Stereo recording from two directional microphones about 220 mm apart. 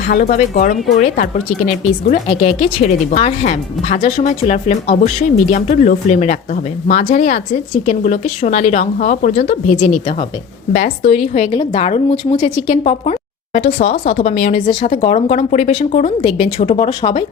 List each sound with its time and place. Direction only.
0.1 s a woman's voice: 35° left (ahead or behind)